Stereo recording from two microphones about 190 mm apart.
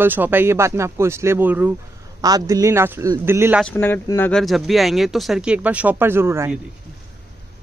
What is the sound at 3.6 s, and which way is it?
Speech, 10° left (ahead or behind).